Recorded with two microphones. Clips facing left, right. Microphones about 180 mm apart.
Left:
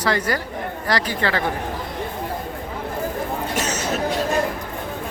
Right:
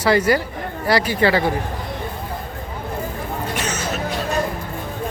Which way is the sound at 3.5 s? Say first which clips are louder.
Left 1 dB; 40° left (ahead or behind).